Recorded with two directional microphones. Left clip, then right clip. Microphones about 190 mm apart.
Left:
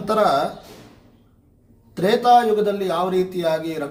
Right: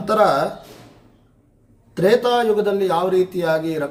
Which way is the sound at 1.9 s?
15° right (ahead or behind).